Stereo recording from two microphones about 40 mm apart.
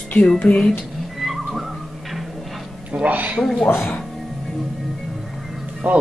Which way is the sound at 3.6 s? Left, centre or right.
Left.